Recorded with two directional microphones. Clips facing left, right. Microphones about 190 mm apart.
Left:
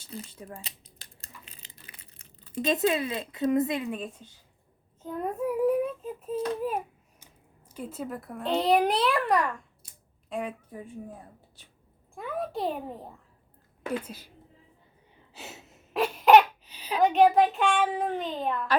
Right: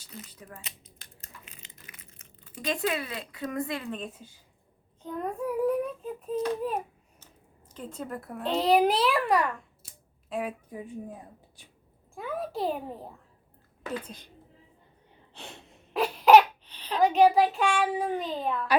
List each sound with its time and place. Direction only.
0.0 s a sound: 30° left (ahead or behind); by 7.3 s 10° left (ahead or behind)
7.7 s a child's voice: 10° left (ahead or behind)
10.7 s speech: 15° right (ahead or behind)
12.1 s a child's voice: centre (ahead or behind)
15.3 s a sound: 5° left (ahead or behind)
18.2 s a child's voice: centre (ahead or behind)